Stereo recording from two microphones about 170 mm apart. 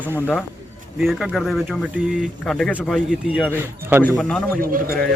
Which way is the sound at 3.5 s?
10° right (ahead or behind).